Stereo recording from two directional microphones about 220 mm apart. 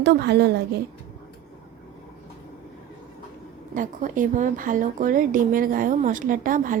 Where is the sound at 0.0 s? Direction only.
50° right (ahead or behind).